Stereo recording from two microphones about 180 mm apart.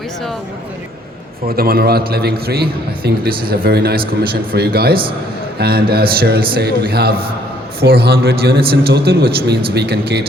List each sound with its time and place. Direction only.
1.5 s a man's voice: 55° right (ahead or behind)